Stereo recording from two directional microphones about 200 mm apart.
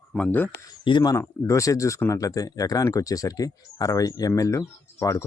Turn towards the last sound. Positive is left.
turn(degrees=15)  # may be behind; listen again after turning